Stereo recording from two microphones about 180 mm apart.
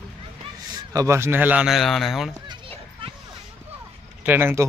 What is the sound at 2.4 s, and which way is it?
Children playing, 25° right (ahead or behind).